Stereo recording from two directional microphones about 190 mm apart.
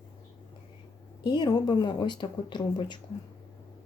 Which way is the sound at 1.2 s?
20° left (ahead or behind).